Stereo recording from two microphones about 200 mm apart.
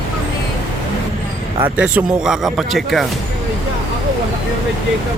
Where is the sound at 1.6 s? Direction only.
5° right (ahead or behind).